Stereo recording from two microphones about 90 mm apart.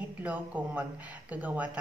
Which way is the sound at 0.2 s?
15° right (ahead or behind).